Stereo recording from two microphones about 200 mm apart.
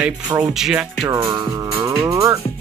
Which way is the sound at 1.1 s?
15° right (ahead or behind).